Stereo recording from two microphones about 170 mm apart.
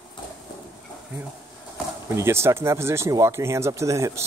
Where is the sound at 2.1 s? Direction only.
15° right (ahead or behind).